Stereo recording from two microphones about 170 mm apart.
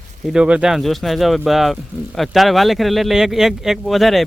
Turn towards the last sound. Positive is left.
turn(degrees=0)  # may be behind; listen again after turning